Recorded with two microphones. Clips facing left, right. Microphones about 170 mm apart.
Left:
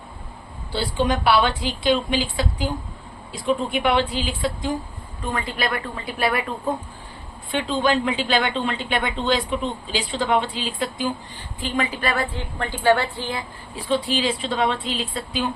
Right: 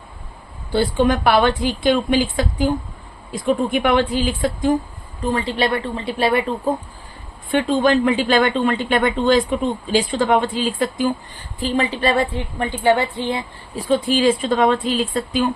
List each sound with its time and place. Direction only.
0.7 s a woman's voice: 50° right (ahead or behind)
5.2 s a woman's voice: 30° right (ahead or behind)
7.5 s a woman's voice: 50° right (ahead or behind)
11.6 s a woman's voice: 30° right (ahead or behind)
13.7 s a woman's voice: 45° right (ahead or behind)